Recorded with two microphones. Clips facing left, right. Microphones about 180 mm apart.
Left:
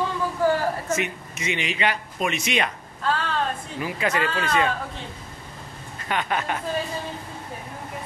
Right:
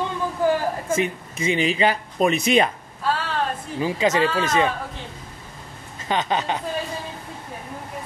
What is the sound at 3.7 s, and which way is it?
Speech, 25° right (ahead or behind).